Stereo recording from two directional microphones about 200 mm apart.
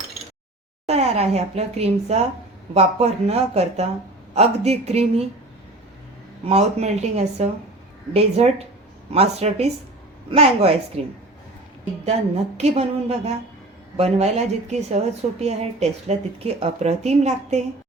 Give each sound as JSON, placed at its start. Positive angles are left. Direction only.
{"t": 0.9, "sound": "a woman's voice", "side_deg": -30}
{"t": 6.4, "sound": "a woman's voice", "side_deg": -30}
{"t": 12.5, "sound": "a woman's voice", "side_deg": -35}